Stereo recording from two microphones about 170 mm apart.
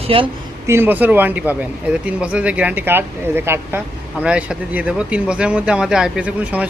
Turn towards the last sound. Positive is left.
turn(degrees=-10)  # may be behind; listen again after turning